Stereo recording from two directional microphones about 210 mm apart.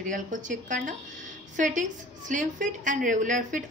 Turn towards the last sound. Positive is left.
turn(degrees=-40)  # may be behind; listen again after turning